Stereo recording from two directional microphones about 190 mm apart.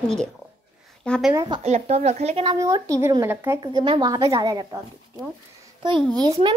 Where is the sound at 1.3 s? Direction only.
25° right (ahead or behind).